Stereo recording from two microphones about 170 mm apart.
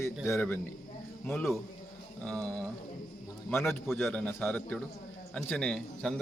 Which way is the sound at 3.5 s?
15° left (ahead or behind).